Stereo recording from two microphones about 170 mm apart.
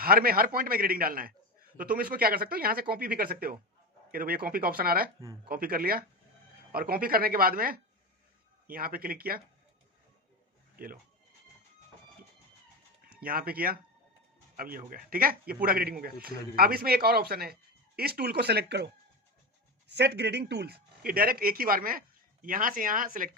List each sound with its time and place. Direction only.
0.0 s speech: 60° right (ahead or behind)
13.1 s speech: 60° right (ahead or behind)
19.9 s speech: 85° right; by 23.3 s 55° right (ahead or behind)